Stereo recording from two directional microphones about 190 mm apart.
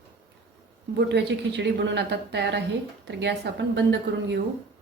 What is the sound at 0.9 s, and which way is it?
A woman's voice, 60° right (ahead or behind).